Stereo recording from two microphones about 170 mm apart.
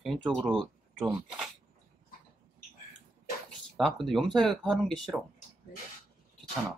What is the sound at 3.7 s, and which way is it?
Speech, centre (ahead or behind).